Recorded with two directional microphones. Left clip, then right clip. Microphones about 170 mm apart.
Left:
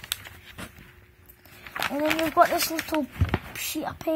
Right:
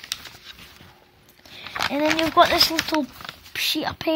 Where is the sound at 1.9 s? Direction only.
10° right (ahead or behind).